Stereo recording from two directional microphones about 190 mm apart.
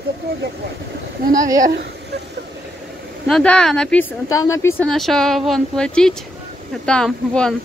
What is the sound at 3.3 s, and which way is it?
Speech, 5° left (ahead or behind).